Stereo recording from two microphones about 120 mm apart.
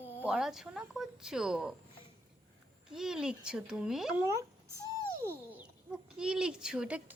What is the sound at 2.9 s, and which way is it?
Speech, 5° right (ahead or behind).